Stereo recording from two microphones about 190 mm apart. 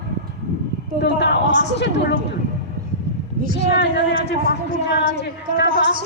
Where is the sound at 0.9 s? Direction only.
65° left (ahead or behind).